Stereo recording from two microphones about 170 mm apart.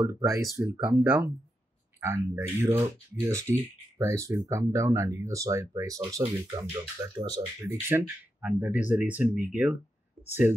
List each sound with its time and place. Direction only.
0.0 s speech: 15° right (ahead or behind)
7.9 s speech: 10° right (ahead or behind)